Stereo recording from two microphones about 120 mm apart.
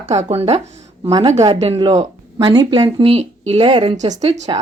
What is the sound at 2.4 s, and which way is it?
Speech, 35° right (ahead or behind).